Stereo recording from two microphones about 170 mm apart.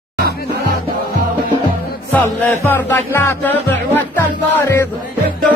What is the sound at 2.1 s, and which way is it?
Music, 10° left (ahead or behind).